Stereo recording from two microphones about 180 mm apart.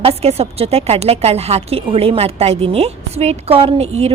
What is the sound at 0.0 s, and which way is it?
A woman's voice, 35° right (ahead or behind).